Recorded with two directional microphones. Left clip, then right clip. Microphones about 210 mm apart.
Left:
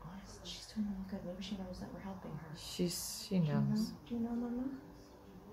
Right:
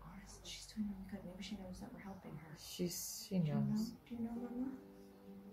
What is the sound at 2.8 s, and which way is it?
Speech, centre (ahead or behind).